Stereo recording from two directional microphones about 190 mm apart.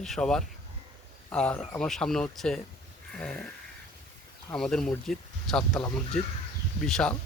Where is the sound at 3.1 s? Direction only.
5° left (ahead or behind).